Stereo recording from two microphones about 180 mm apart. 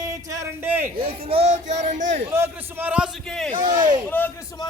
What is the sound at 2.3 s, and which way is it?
A man's voice, 15° right (ahead or behind).